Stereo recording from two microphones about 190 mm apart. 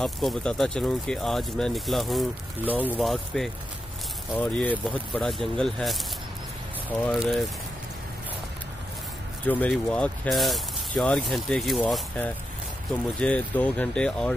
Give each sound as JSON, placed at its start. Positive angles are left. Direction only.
{"t": 0.0, "sound": "speech", "side_deg": 0}
{"t": 7.1, "sound": "speech", "side_deg": 0}
{"t": 9.5, "sound": "speech", "side_deg": 5}